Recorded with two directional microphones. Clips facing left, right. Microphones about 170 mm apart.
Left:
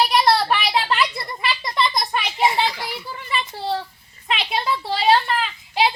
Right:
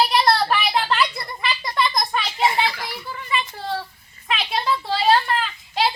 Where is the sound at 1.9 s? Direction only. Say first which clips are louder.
Even; 15° left (ahead or behind).